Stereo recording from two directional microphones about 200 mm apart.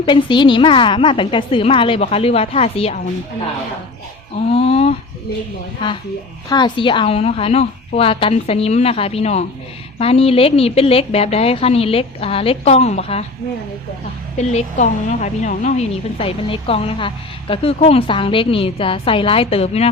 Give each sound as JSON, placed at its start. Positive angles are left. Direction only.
{"t": 0.0, "sound": "a woman's voice", "side_deg": 25}
{"t": 4.5, "sound": "a woman's voice", "side_deg": 30}
{"t": 6.5, "sound": "a woman's voice", "side_deg": 25}
{"t": 14.5, "sound": "a woman's voice", "side_deg": 35}